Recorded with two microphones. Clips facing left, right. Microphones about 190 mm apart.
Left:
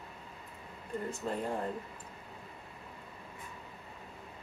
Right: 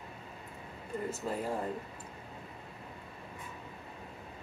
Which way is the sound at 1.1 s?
5° right (ahead or behind).